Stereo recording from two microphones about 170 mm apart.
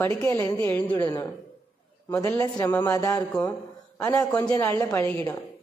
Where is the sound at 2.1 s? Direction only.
15° left (ahead or behind).